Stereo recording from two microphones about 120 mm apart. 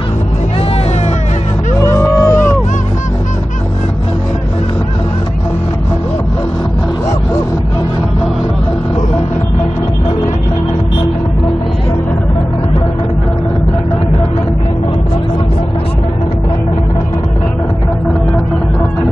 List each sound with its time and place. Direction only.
1.8 s music: 20° left (ahead or behind)